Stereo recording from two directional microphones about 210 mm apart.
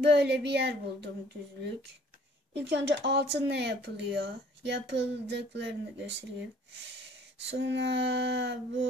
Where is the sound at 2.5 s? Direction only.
55° right (ahead or behind).